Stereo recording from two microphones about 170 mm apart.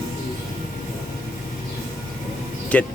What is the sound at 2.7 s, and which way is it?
Speech, 10° left (ahead or behind).